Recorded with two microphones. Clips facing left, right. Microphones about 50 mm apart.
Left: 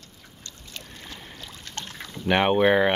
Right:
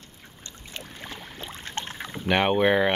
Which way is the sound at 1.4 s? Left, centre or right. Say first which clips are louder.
Right 5 dB; right.